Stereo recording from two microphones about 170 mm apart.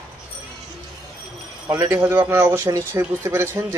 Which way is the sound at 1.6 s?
15° right (ahead or behind).